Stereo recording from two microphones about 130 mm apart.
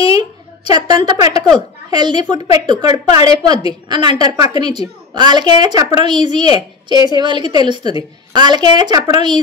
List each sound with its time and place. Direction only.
0.7 s a woman's voice: 35° right (ahead or behind)